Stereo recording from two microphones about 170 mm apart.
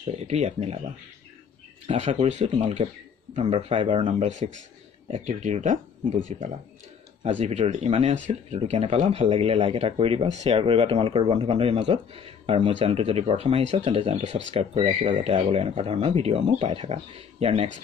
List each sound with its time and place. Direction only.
0.0 s speech: 40° right (ahead or behind)
1.9 s speech: 40° right (ahead or behind)